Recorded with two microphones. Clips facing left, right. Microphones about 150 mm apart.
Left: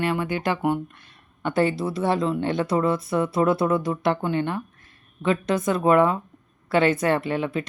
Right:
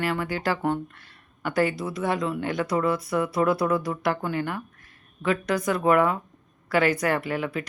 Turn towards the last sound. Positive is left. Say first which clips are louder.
# left 3 dB
turn(degrees=25)  # may be behind; listen again after turning